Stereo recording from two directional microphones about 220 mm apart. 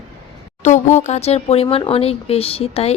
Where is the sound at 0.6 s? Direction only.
35° left (ahead or behind).